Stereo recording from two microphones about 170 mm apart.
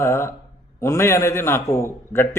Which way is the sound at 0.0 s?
15° left (ahead or behind).